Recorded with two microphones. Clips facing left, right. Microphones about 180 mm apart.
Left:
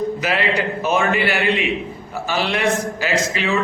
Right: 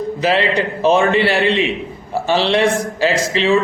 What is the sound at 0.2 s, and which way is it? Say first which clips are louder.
A man's voice: right 4 dB; 30° right (ahead or behind).